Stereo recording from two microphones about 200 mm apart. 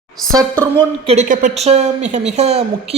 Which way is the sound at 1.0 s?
35° right (ahead or behind).